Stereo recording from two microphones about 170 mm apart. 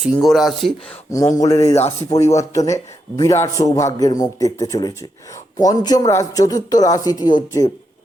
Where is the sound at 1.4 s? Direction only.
20° left (ahead or behind).